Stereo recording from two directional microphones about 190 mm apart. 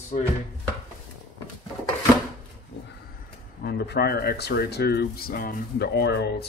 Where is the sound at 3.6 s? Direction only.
60° left (ahead or behind).